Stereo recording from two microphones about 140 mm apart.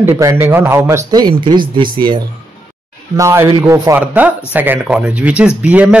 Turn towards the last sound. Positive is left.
turn(degrees=-10)  # may be behind; listen again after turning